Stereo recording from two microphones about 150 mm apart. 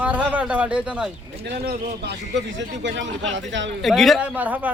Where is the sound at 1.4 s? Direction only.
90° right.